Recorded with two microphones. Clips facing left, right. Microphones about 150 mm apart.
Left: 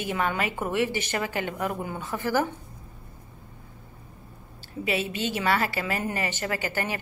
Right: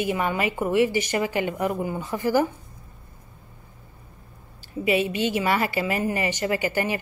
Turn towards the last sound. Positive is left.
turn(degrees=-15)  # may be behind; listen again after turning